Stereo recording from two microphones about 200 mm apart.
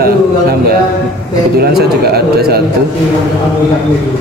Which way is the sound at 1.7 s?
50° right (ahead or behind).